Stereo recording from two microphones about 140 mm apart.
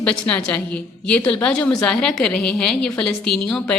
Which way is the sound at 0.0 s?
10° left (ahead or behind).